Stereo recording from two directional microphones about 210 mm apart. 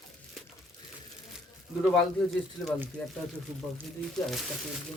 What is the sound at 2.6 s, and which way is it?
Speech, 5° right (ahead or behind).